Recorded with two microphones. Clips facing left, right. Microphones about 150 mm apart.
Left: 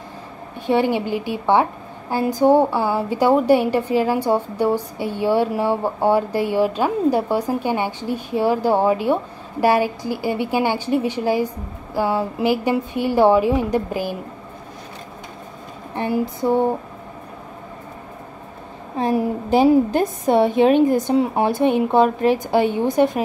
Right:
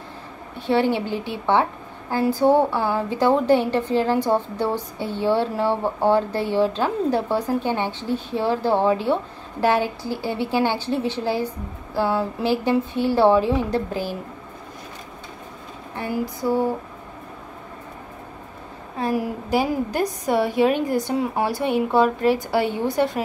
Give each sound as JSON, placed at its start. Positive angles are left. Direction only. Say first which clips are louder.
{"t": 0.6, "sound": "a woman's voice", "louder": "left 2 dB", "side_deg": 15}
{"t": 16.0, "sound": "a woman's voice", "louder": "left 4 dB", "side_deg": 25}
{"t": 18.9, "sound": "a woman's voice", "louder": "left 4 dB", "side_deg": 25}